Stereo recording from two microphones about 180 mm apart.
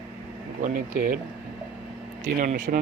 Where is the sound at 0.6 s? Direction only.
50° right (ahead or behind).